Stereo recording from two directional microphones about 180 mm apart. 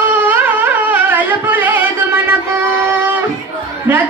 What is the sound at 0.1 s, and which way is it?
Music, 10° right (ahead or behind).